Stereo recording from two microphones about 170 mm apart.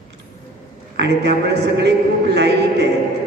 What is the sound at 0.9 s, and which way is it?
A man's voice, 85° right.